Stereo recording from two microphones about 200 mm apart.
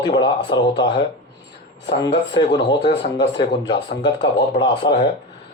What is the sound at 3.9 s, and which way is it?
Speech, 20° left (ahead or behind).